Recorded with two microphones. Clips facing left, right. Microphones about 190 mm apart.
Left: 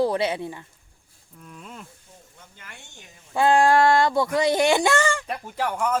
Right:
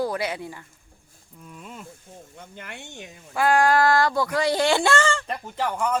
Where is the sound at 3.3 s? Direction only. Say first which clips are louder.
Left 2 dB; 25° left (ahead or behind).